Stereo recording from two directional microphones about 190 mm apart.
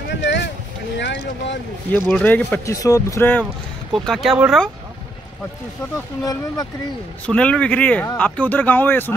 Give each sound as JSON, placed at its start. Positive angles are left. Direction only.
{"t": 0.1, "sound": "boat", "side_deg": 65}
{"t": 0.9, "sound": "speech", "side_deg": 65}
{"t": 1.9, "sound": "speech", "side_deg": 5}
{"t": 3.9, "sound": "speech", "side_deg": 0}
{"t": 6.2, "sound": "speech", "side_deg": 20}
{"t": 7.2, "sound": "speech", "side_deg": 5}